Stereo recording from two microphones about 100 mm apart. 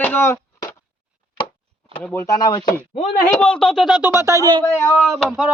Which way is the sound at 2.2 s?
40° left (ahead or behind).